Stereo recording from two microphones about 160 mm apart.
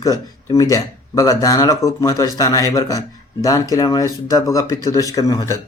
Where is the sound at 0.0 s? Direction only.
20° left (ahead or behind).